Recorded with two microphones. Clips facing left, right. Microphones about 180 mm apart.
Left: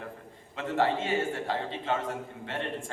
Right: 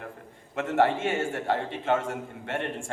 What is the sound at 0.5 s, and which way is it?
A man's voice, 60° right (ahead or behind).